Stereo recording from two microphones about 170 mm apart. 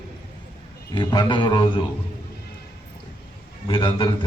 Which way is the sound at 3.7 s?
30° left (ahead or behind).